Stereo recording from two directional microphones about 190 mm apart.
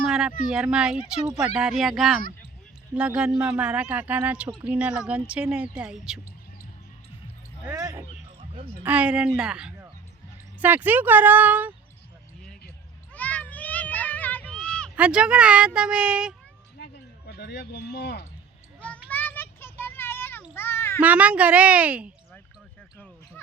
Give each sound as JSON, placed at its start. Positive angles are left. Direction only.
{"t": 0.0, "sound": "a sound", "side_deg": 0}
{"t": 0.4, "sound": "a man's voice", "side_deg": -5}
{"t": 7.6, "sound": "a man's voice", "side_deg": -15}
{"t": 13.1, "sound": "children playing", "side_deg": 10}
{"t": 14.9, "sound": "a man's voice", "side_deg": -5}
{"t": 16.7, "sound": "a sound", "side_deg": 60}
{"t": 18.8, "sound": "a sound", "side_deg": 5}
{"t": 20.5, "sound": "children playing", "side_deg": 10}
{"t": 21.0, "sound": "speech", "side_deg": -5}